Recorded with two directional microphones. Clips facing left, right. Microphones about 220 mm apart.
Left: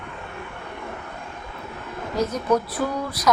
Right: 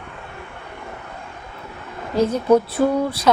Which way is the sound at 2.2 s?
30° right (ahead or behind).